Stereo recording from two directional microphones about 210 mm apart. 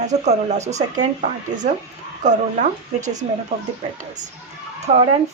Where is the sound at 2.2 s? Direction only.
35° right (ahead or behind).